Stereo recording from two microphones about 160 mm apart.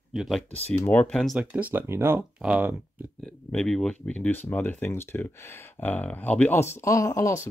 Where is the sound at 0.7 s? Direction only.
10° left (ahead or behind).